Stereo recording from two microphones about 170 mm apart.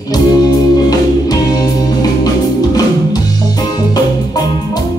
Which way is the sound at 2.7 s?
20° left (ahead or behind).